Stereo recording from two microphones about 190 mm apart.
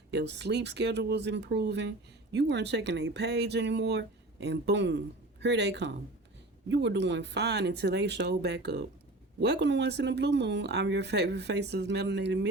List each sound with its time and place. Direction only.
0.1 s speech: 65° right (ahead or behind)